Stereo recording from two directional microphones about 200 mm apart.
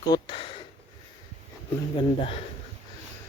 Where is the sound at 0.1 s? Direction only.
25° left (ahead or behind).